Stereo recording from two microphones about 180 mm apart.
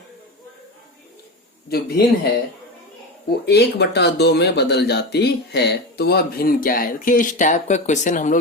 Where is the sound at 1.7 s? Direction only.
60° left (ahead or behind).